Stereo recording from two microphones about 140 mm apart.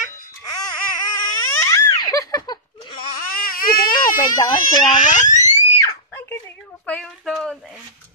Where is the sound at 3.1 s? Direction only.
90° left.